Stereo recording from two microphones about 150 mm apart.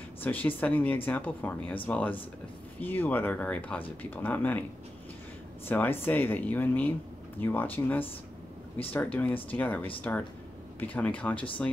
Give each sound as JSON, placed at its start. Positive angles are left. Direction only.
{"t": 0.2, "sound": "speech", "side_deg": 10}
{"t": 5.7, "sound": "speech", "side_deg": 15}